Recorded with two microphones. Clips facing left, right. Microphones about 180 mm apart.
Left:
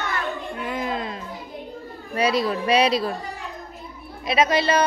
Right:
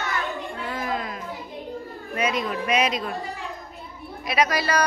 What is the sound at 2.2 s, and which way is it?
Speech, 35° left (ahead or behind).